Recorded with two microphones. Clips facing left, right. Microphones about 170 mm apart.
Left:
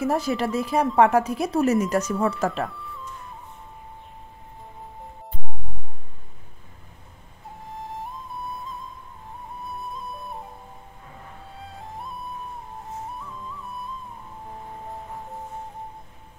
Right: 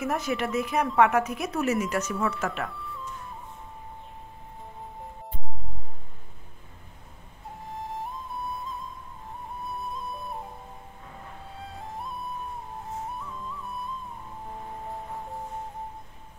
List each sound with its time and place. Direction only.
0.0 s speech: 30° left (ahead or behind)
2.7 s music: centre (ahead or behind)
7.6 s music: centre (ahead or behind)
11.5 s music: centre (ahead or behind)
13.2 s flute: centre (ahead or behind)